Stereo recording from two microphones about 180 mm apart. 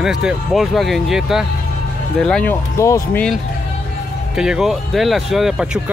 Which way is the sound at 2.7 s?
15° left (ahead or behind).